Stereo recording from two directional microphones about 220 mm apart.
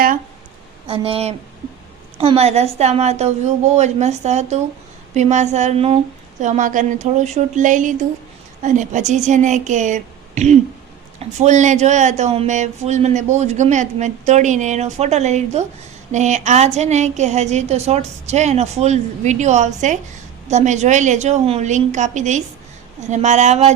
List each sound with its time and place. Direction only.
0.9 s a woman's voice: 25° right (ahead or behind)